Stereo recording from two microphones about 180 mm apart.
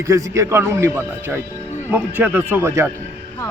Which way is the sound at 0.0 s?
15° right (ahead or behind).